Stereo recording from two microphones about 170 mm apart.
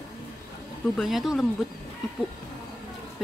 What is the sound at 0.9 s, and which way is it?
Speech, centre (ahead or behind).